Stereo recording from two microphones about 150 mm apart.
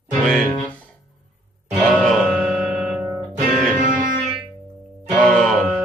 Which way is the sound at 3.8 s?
60° right (ahead or behind).